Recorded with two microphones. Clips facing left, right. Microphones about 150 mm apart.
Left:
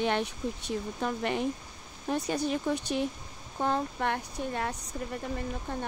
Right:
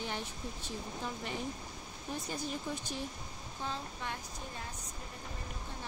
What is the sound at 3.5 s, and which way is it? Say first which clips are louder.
Speech: left 12 dB; 60° left (ahead or behind).